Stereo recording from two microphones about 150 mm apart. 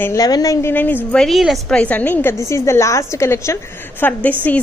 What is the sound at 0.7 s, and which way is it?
A woman's voice, 10° left (ahead or behind).